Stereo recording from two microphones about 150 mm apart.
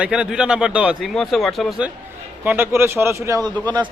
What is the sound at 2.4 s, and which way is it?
Speech, 15° right (ahead or behind).